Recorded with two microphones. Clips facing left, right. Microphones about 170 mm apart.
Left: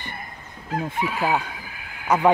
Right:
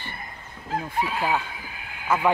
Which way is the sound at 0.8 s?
20° left (ahead or behind).